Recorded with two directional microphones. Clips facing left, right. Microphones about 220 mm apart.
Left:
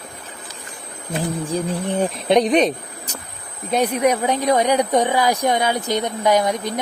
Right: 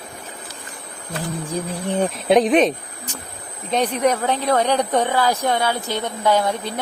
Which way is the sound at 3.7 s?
10° left (ahead or behind).